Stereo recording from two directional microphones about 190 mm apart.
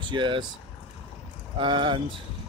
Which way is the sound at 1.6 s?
25° right (ahead or behind).